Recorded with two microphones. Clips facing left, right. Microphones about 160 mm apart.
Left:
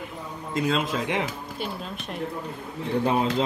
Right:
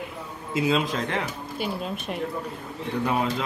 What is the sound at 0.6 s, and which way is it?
Speech, centre (ahead or behind).